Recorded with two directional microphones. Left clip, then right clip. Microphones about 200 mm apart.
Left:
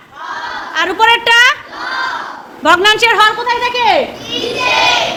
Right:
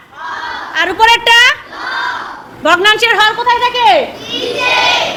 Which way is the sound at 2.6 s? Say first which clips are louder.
Even; 10° left (ahead or behind).